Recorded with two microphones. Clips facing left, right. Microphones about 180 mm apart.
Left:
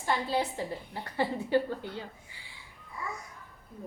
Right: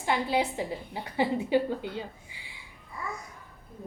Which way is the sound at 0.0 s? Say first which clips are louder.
Right 3 dB; 15° right (ahead or behind).